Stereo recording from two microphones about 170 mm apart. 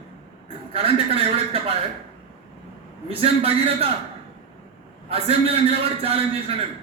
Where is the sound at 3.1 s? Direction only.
35° right (ahead or behind).